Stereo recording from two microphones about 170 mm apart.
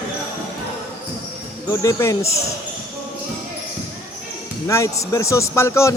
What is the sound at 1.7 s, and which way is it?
Speech, 20° left (ahead or behind).